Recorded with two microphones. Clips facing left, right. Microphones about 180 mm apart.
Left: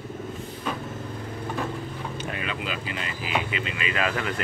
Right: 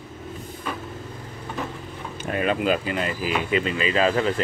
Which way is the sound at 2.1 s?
50° right (ahead or behind).